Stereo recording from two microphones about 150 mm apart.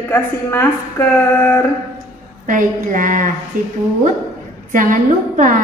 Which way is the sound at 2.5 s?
60° right (ahead or behind).